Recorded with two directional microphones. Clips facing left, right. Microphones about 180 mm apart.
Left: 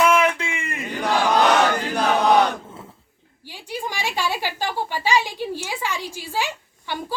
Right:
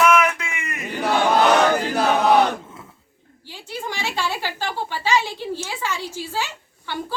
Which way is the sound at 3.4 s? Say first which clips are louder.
Left 1 dB; 15° left (ahead or behind).